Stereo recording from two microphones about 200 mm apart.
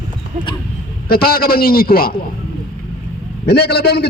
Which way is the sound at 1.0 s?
50° left (ahead or behind).